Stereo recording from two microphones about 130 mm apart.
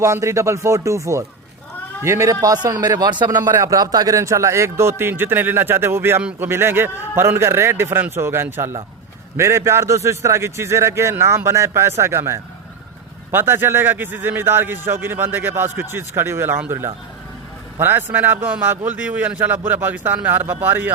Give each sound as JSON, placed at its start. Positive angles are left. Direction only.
{"t": 0.0, "sound": "a man's voice", "side_deg": -20}